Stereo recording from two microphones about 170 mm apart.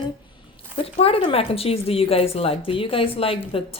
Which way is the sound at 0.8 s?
35° left (ahead or behind).